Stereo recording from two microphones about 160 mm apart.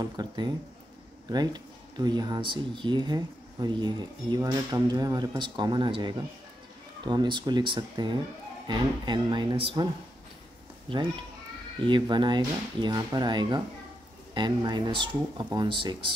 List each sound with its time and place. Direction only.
0.0 s speech: 25° right (ahead or behind)
11.8 s speech: 30° right (ahead or behind)